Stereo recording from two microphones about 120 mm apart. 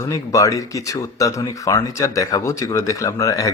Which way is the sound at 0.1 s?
25° left (ahead or behind).